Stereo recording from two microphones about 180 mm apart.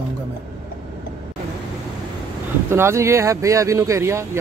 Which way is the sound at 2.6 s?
15° right (ahead or behind).